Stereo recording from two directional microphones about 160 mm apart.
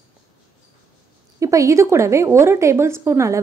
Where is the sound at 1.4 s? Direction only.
20° right (ahead or behind).